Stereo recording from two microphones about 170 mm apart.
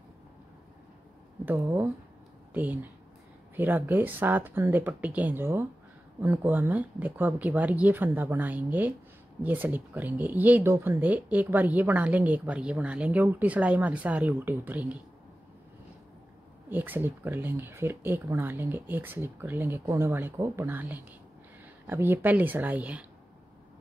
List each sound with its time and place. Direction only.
1.4 s speech: 15° right (ahead or behind)
16.6 s speech: 10° right (ahead or behind)